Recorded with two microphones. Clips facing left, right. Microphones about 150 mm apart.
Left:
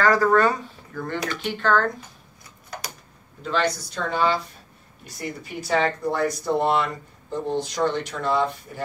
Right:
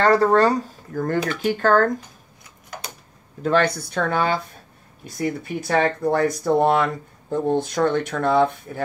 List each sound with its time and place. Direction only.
0.0 s speech: 30° right (ahead or behind); by 1.9 s 45° right (ahead or behind)
3.4 s speech: 55° right (ahead or behind)